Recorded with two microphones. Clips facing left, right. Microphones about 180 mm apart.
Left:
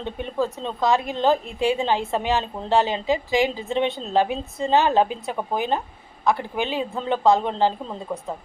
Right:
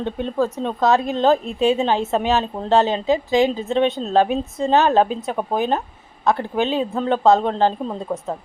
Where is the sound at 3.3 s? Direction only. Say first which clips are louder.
Right 4 dB; 20° right (ahead or behind).